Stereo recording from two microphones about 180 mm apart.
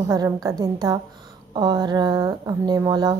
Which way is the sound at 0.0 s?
20° right (ahead or behind).